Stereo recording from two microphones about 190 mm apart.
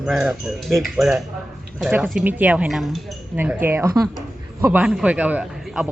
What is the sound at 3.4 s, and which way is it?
Speech, 10° right (ahead or behind).